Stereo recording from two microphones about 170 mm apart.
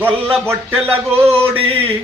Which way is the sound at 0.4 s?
15° right (ahead or behind).